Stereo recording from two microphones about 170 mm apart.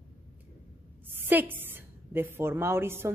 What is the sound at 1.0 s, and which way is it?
A woman's voice, 10° right (ahead or behind).